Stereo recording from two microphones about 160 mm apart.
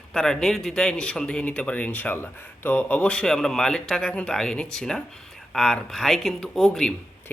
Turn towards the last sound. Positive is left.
turn(degrees=5)  # may be behind; listen again after turning